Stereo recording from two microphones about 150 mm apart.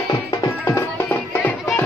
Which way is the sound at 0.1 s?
20° left (ahead or behind).